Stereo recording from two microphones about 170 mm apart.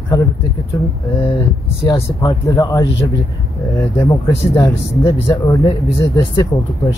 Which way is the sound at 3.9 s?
20° left (ahead or behind).